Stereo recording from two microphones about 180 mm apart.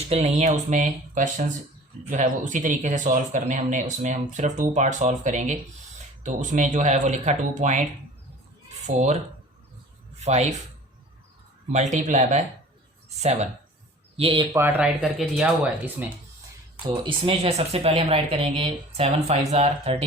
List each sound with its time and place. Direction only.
0.1 s speech: 40° right (ahead or behind)
8.9 s speech: 40° right (ahead or behind)
11.7 s speech: 40° right (ahead or behind)
14.5 s speech: 10° right (ahead or behind)
16.8 s speech: 25° right (ahead or behind)